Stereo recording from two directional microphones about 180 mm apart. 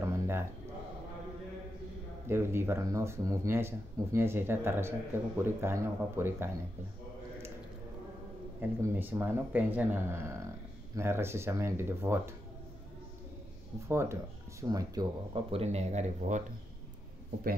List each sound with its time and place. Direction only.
0.0 s a sound: 15° right (ahead or behind)
2.2 s speech: 15° right (ahead or behind)
8.5 s speech: 10° right (ahead or behind)
13.8 s speech: 15° right (ahead or behind); by 16.4 s 40° right (ahead or behind)